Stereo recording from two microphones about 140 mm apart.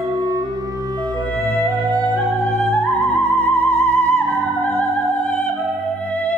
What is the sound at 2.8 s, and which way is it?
Music, 10° left (ahead or behind).